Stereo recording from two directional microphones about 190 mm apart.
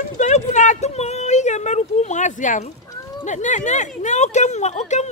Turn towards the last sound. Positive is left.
turn(degrees=35)  # may be behind; listen again after turning